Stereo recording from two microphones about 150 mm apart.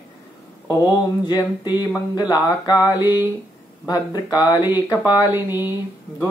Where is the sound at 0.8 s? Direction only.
25° left (ahead or behind).